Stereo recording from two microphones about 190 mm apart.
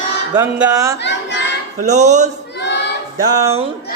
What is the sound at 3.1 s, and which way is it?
Speech, 20° right (ahead or behind).